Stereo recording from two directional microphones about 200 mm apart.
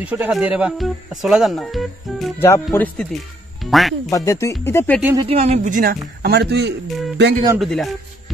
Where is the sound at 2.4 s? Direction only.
15° left (ahead or behind).